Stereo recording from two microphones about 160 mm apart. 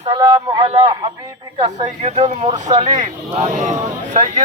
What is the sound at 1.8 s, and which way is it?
A man's voice, 45° right (ahead or behind).